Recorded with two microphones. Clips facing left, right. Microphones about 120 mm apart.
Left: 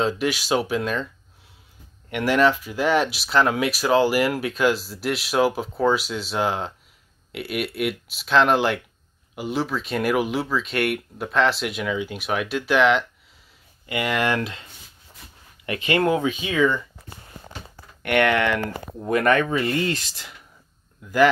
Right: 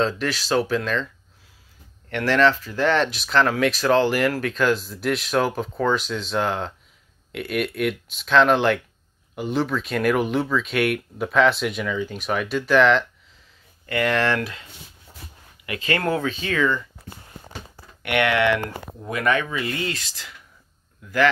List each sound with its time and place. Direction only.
0.0 s speech: 10° left (ahead or behind)
2.0 s speech: 10° left (ahead or behind)
14.4 s speech: 30° left (ahead or behind)
15.8 s speech: 20° left (ahead or behind)
18.3 s speech: 40° left (ahead or behind)